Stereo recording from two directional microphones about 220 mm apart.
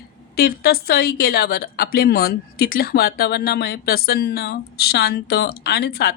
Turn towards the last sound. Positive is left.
turn(degrees=45)  # may be behind; listen again after turning